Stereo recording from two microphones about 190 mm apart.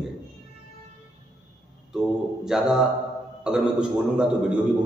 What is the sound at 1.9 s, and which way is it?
Mantra, centre (ahead or behind).